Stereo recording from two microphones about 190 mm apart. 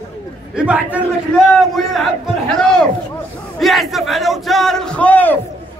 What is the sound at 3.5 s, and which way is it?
Speech, centre (ahead or behind).